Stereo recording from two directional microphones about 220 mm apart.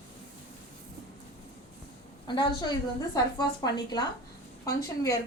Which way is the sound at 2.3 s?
20° left (ahead or behind).